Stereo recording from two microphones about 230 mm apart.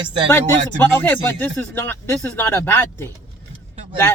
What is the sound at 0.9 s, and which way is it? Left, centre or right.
Speech, centre.